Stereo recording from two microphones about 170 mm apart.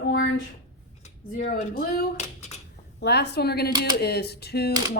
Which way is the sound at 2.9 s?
75° left (ahead or behind).